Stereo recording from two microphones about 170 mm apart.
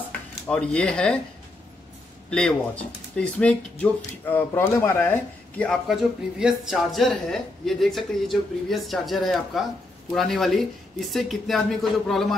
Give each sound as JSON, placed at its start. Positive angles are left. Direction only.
{"t": 0.5, "sound": "speech", "side_deg": 5}
{"t": 2.3, "sound": "speech", "side_deg": 5}